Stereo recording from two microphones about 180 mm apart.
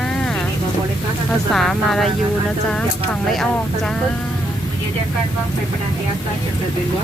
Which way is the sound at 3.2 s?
Centre (ahead or behind).